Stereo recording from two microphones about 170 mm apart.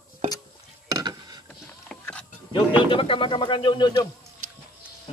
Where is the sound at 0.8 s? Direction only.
25° right (ahead or behind).